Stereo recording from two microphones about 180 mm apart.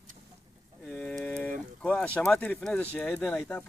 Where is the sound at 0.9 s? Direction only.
10° left (ahead or behind).